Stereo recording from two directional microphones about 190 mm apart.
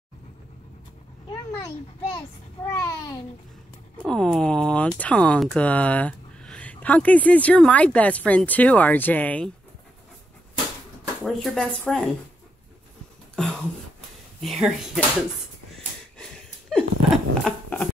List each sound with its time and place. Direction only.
1.3 s speech: 20° left (ahead or behind)
4.1 s speech: centre (ahead or behind)
11.2 s speech: 5° left (ahead or behind)
14.4 s speech: centre (ahead or behind)
16.2 s a sound: centre (ahead or behind)